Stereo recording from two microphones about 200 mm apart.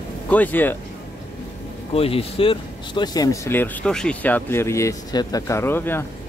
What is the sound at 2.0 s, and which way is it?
Speech, 30° left (ahead or behind).